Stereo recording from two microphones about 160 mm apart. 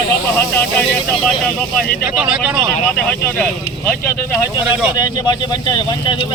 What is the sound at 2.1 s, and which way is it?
Speech, 5° right (ahead or behind).